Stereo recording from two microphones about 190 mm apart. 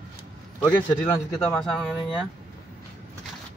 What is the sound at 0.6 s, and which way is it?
A man's voice, 5° left (ahead or behind).